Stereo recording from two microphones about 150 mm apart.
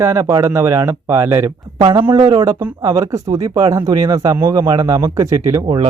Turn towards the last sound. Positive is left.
turn(degrees=-35)  # may be behind; listen again after turning